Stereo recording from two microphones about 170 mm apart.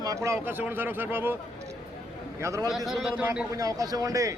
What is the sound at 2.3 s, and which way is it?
Speech, 15° right (ahead or behind).